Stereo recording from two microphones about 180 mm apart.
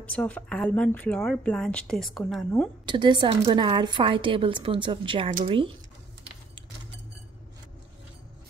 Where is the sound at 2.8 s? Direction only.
25° right (ahead or behind).